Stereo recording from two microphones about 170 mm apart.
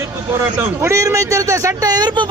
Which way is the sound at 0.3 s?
15° right (ahead or behind).